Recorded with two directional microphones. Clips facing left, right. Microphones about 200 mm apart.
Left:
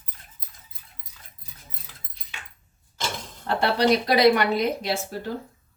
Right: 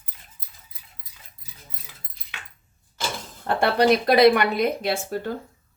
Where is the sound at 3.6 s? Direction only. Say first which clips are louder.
Right 2 dB; 55° right (ahead or behind).